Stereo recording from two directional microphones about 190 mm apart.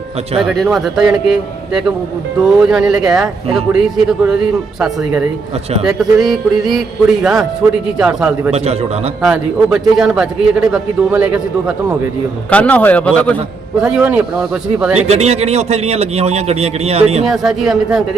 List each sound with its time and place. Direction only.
0.3 s a man's voice: centre (ahead or behind)
5.8 s a man's voice: centre (ahead or behind)
12.5 s a man's voice: 5° left (ahead or behind)
13.8 s speech: 5° right (ahead or behind)
14.9 s a man's voice: 35° right (ahead or behind)
17.2 s a man's voice: centre (ahead or behind)